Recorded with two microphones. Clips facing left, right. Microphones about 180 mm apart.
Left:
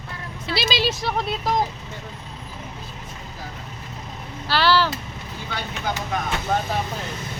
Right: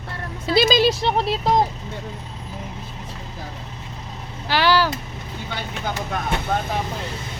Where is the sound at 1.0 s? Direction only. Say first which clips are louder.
Right 4 dB; 30° right (ahead or behind).